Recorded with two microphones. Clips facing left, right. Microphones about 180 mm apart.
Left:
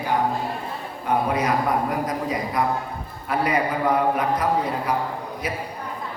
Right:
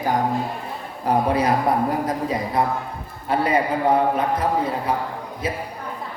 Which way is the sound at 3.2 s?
30° right (ahead or behind).